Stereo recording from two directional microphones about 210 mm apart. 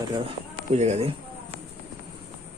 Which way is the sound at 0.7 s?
30° right (ahead or behind).